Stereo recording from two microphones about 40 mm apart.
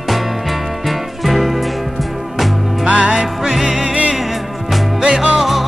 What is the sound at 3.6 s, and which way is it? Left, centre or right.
Music, centre.